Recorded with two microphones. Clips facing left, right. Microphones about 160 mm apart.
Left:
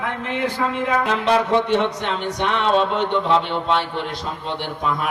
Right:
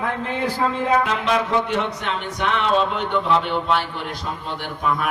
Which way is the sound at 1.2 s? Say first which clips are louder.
Left 3 dB; 30° left (ahead or behind).